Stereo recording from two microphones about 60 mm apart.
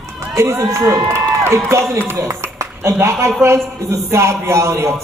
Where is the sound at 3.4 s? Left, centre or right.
Right.